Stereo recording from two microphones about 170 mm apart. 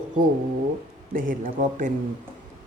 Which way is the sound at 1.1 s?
50° right (ahead or behind).